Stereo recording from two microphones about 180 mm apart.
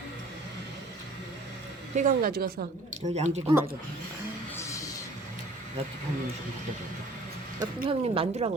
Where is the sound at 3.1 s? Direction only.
40° right (ahead or behind).